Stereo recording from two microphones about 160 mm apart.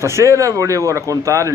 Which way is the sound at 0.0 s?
20° right (ahead or behind).